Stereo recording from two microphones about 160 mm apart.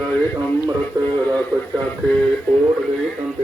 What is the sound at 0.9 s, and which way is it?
Speech, 20° right (ahead or behind).